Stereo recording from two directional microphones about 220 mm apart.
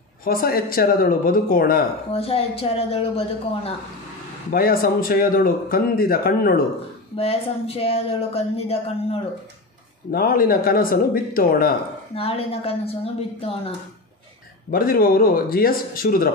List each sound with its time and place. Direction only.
0.2 s a man's voice: 40° left (ahead or behind)
2.1 s speech: 25° left (ahead or behind)
4.5 s a man's voice: 40° left (ahead or behind)
7.2 s speech: 25° left (ahead or behind)
10.1 s a man's voice: 40° left (ahead or behind)
12.2 s speech: 25° left (ahead or behind)
14.7 s a man's voice: 40° left (ahead or behind)